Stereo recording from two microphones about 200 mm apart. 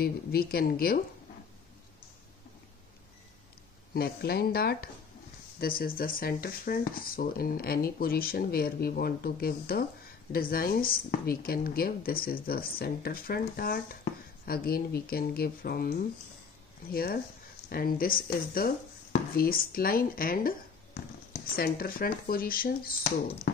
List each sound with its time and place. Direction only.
0.0 s speech: 50° left (ahead or behind)
3.9 s speech: 50° left (ahead or behind)